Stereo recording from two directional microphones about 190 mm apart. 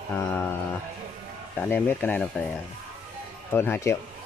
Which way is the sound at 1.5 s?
10° left (ahead or behind).